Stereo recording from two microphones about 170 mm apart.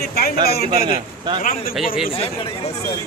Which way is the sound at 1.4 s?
55° left (ahead or behind).